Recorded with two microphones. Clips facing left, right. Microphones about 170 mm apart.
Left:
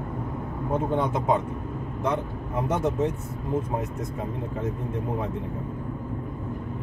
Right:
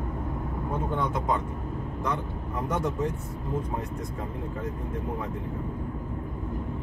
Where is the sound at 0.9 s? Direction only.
20° left (ahead or behind).